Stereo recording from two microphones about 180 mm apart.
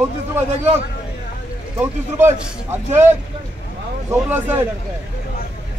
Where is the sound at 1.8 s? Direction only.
10° right (ahead or behind).